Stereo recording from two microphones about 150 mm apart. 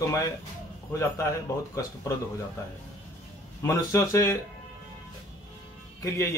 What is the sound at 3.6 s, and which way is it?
Speech, 20° left (ahead or behind).